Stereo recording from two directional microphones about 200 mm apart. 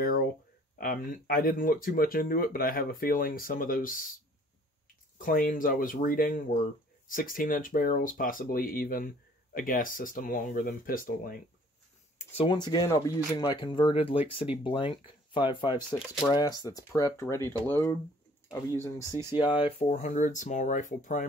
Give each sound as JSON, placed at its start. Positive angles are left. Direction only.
{"t": 0.0, "sound": "a sound", "side_deg": 45}
{"t": 0.7, "sound": "speech", "side_deg": 45}
{"t": 5.1, "sound": "speech", "side_deg": 45}
{"t": 12.2, "sound": "speech", "side_deg": 30}
{"t": 20.0, "sound": "speech", "side_deg": 40}